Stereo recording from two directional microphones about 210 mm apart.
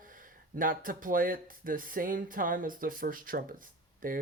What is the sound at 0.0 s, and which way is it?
Speech, 40° right (ahead or behind).